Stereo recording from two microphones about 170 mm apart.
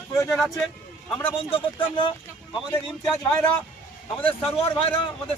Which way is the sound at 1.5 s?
30° left (ahead or behind).